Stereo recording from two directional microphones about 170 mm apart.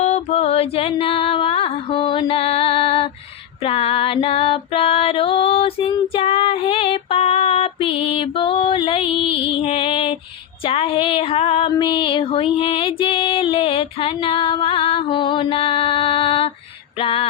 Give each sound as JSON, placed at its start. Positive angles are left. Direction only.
{"t": 0.0, "sound": "music", "side_deg": 40}
{"t": 3.6, "sound": "female singing", "side_deg": 35}
{"t": 10.6, "sound": "music", "side_deg": 35}